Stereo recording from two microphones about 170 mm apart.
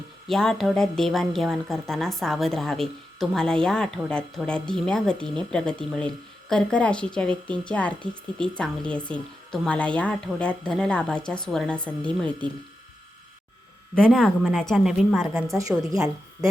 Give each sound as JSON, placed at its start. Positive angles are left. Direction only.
{"t": 0.3, "sound": "a woman's voice", "side_deg": 0}
{"t": 13.9, "sound": "a woman's voice", "side_deg": 5}
{"t": 15.8, "sound": "a woman's voice", "side_deg": -20}